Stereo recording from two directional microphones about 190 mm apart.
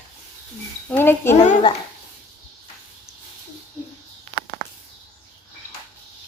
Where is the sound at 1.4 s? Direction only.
30° left (ahead or behind).